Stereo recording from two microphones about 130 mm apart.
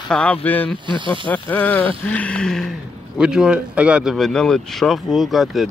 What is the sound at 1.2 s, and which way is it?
Speech, 15° left (ahead or behind).